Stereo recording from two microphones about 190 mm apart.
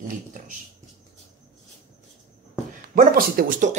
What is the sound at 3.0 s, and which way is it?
Speech, 50° right (ahead or behind).